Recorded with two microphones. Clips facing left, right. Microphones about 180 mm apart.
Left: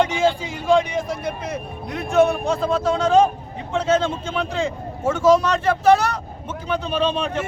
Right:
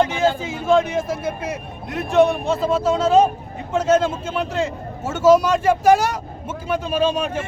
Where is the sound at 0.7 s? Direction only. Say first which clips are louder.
Right 1 dB; 5° right (ahead or behind).